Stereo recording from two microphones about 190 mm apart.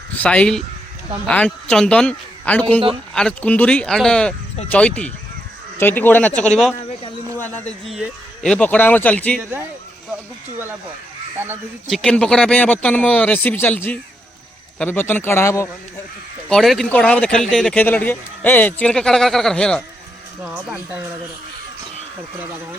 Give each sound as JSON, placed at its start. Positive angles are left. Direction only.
{"t": 0.1, "sound": "speech", "side_deg": 5}
{"t": 9.4, "sound": "speech", "side_deg": -10}
{"t": 11.9, "sound": "speech", "side_deg": 5}
{"t": 16.5, "sound": "speech", "side_deg": 0}